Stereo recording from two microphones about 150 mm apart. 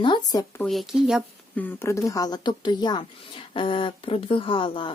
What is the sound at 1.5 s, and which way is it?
Speech, 15° left (ahead or behind).